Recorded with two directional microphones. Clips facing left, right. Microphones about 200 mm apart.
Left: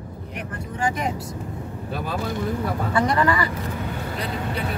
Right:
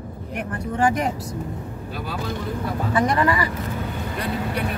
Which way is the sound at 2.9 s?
15° right (ahead or behind).